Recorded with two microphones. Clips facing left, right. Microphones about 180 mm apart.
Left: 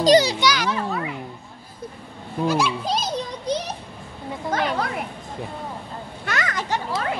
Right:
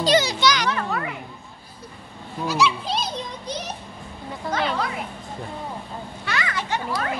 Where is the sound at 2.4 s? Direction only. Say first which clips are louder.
Left 1 dB; 50° left (ahead or behind).